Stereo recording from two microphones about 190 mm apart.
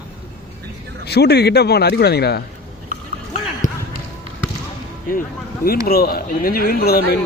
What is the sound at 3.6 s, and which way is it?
Basketball bounce, 40° left (ahead or behind).